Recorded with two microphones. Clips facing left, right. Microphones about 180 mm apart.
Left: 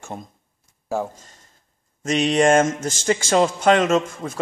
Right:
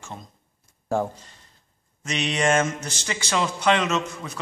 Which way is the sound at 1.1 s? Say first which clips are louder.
Even; 45° left (ahead or behind).